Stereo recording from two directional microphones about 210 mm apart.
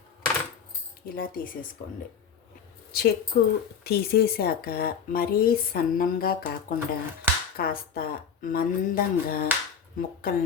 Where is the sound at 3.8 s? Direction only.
50° left (ahead or behind).